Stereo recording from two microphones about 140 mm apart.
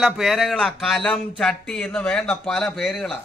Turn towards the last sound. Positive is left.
turn(degrees=0)  # may be behind; listen again after turning